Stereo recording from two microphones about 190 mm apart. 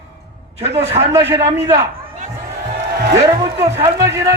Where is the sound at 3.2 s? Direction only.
15° right (ahead or behind).